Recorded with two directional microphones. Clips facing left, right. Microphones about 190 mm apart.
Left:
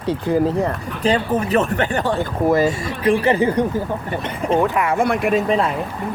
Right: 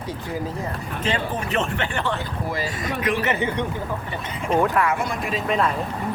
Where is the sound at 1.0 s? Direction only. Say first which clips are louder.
Left 8 dB; 40° left (ahead or behind).